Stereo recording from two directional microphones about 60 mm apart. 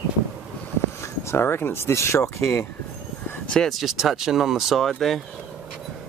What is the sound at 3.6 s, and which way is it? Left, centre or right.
Speech, centre.